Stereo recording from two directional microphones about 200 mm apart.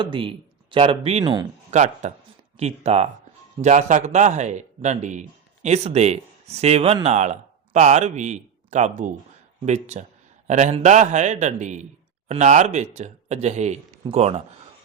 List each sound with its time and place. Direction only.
0.0 s speech: 25° right (ahead or behind)
1.7 s a man's voice: 35° right (ahead or behind)